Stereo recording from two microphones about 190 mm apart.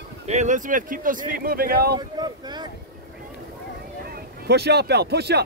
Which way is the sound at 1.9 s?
20° right (ahead or behind).